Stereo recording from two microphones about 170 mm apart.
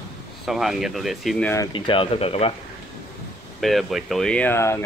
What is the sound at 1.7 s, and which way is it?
Speech, 30° left (ahead or behind).